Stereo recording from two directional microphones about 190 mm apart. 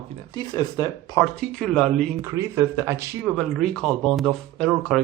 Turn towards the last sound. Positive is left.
turn(degrees=0)  # may be behind; listen again after turning